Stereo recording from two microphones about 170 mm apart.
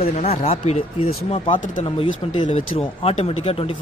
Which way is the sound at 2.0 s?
30° left (ahead or behind).